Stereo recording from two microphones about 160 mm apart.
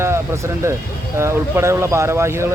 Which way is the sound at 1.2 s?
15° right (ahead or behind).